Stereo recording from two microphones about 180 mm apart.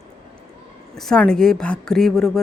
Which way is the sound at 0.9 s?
5° left (ahead or behind).